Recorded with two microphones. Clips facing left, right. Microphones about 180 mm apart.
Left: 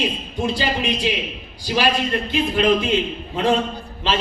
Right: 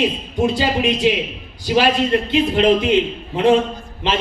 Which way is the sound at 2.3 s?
20° right (ahead or behind).